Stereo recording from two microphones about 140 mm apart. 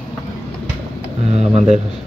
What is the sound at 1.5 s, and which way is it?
Speech, 50° right (ahead or behind).